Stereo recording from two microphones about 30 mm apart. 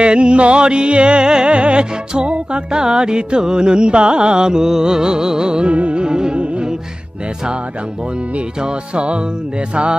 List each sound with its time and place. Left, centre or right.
0.0 s music: right
2.7 s music: right
5.7 s music: right
6.0 s music: right
6.3 s music: right
8.5 s music: right